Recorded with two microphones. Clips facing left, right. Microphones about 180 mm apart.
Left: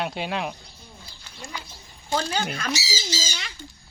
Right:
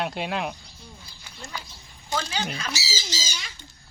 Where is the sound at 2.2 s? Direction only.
50° left (ahead or behind).